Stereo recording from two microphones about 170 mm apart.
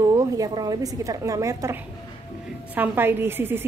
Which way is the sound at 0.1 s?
20° right (ahead or behind).